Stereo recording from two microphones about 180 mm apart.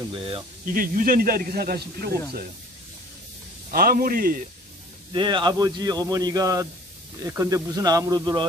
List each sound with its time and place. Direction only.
0.1 s speech: 30° right (ahead or behind)
0.7 s speech: 50° right (ahead or behind)
3.7 s speech: 55° right (ahead or behind)
5.1 s a man's voice: 25° right (ahead or behind)